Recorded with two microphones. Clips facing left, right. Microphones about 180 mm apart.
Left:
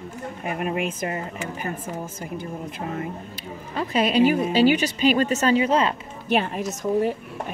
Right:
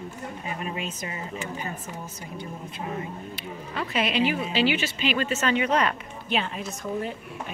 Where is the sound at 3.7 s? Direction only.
40° left (ahead or behind).